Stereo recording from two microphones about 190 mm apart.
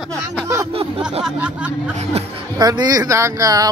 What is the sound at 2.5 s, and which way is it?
Speech, 20° right (ahead or behind).